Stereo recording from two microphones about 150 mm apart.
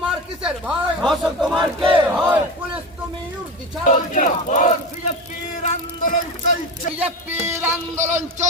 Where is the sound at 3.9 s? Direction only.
60° left (ahead or behind).